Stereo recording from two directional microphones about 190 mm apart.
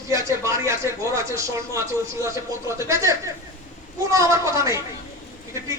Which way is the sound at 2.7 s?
15° right (ahead or behind).